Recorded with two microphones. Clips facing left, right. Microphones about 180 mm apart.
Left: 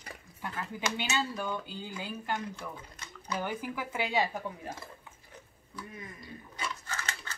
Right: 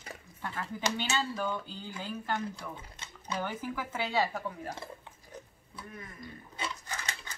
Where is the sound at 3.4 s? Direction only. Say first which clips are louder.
Left 1 dB; 15° left (ahead or behind).